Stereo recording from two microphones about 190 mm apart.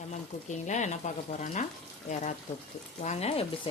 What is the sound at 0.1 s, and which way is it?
Speech, 40° left (ahead or behind).